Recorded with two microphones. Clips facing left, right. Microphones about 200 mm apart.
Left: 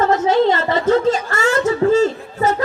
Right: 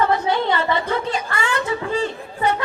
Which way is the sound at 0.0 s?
45° left (ahead or behind).